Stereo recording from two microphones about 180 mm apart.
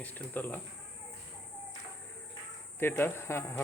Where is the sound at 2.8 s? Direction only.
15° left (ahead or behind).